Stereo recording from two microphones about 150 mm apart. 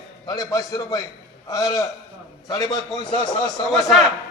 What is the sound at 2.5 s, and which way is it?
A man's voice, 20° left (ahead or behind).